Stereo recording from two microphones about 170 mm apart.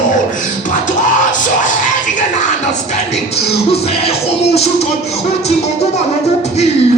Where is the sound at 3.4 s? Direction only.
35° left (ahead or behind).